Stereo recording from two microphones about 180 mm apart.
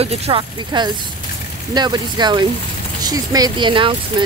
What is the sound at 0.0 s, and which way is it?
Speech, 35° right (ahead or behind).